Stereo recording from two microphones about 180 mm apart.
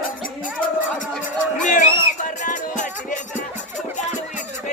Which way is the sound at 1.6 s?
45° left (ahead or behind).